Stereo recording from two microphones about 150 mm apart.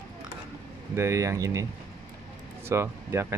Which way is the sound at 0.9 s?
20° right (ahead or behind).